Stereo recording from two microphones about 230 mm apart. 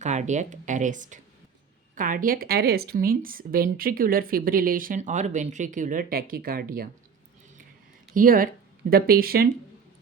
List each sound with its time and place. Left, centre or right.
0.0 s speech: right
8.1 s speech: right